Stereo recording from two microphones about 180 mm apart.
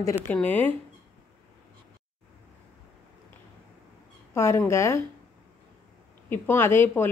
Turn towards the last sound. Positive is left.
turn(degrees=15)  # may be behind; listen again after turning